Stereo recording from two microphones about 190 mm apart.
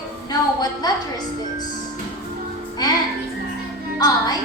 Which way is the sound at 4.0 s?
20° left (ahead or behind).